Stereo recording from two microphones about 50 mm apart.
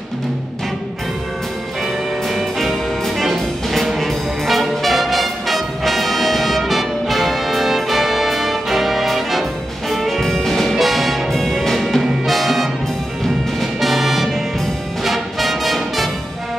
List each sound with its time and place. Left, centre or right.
2.2 s brass instrument: centre
12.0 s music: centre